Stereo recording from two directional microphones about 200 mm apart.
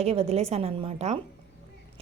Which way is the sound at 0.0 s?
30° right (ahead or behind).